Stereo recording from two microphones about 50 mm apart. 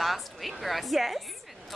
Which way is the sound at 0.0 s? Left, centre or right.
Centre.